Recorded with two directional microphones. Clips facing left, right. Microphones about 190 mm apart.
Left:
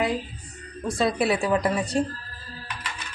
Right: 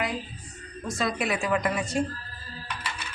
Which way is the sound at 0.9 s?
30° left (ahead or behind).